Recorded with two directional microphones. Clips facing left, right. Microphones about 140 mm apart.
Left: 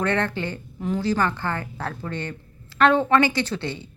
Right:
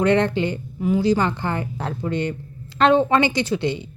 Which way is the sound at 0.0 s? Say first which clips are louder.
Right 6 dB; 15° right (ahead or behind).